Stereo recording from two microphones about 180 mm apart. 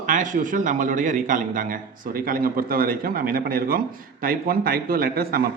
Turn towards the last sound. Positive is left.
turn(degrees=-55)  # may be behind; listen again after turning